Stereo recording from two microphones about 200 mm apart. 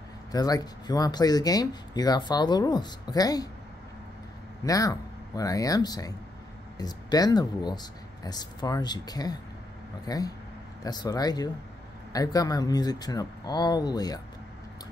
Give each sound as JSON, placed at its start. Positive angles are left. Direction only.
{"t": 0.3, "sound": "speech", "side_deg": 20}
{"t": 4.6, "sound": "speech", "side_deg": 15}